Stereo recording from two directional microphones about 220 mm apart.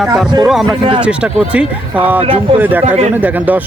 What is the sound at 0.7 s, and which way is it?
Speech, 20° right (ahead or behind).